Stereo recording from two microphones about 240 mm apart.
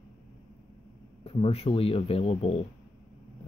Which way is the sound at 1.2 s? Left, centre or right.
Left.